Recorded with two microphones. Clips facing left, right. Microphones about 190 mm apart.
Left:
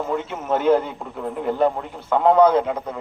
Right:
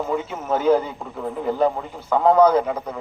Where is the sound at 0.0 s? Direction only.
Centre (ahead or behind).